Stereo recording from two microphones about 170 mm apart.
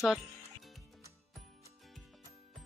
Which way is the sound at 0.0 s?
Centre (ahead or behind).